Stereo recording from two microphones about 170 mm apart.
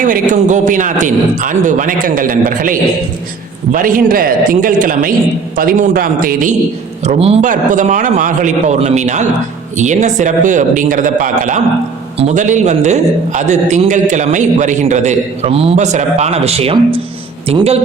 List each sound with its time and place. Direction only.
0.0 s a man's voice: 50° right (ahead or behind)
7.0 s a man's voice: 35° right (ahead or behind)